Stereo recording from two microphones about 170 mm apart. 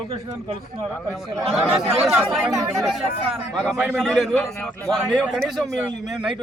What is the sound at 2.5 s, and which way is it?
Speech, 20° right (ahead or behind).